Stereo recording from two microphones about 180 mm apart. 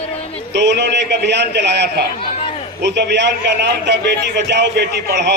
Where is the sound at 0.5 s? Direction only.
75° right (ahead or behind).